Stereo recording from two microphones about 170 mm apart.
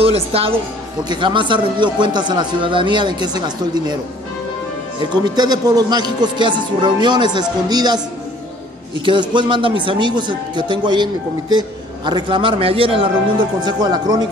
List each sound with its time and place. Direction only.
0.0 s a woman's voice: 35° right (ahead or behind)
5.1 s speech: 25° right (ahead or behind)
9.0 s speech: 30° right (ahead or behind)